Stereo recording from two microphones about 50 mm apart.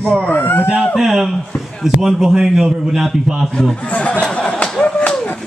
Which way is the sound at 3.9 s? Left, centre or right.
Left.